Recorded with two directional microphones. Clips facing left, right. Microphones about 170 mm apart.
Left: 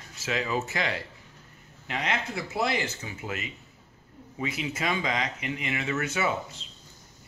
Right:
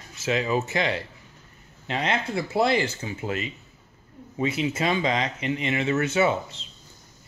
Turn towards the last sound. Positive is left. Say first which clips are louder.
# right 5 dB
turn(degrees=-25)  # may be behind; listen again after turning